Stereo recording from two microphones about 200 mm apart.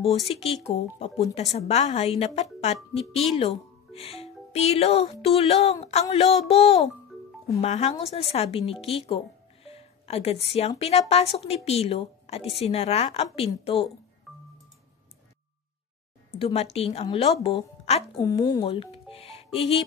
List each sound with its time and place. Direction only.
0.3 s a woman's voice: 30° left (ahead or behind)
8.8 s music: 30° left (ahead or behind)
10.8 s a woman's voice: 30° left (ahead or behind)
14.3 s music: centre (ahead or behind)
16.3 s a woman's voice: 30° left (ahead or behind)
18.2 s speech: 15° left (ahead or behind)
19.0 s music: 30° left (ahead or behind)